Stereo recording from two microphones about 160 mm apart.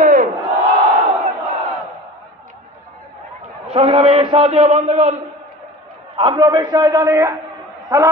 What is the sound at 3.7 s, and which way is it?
A man's voice, 40° right (ahead or behind).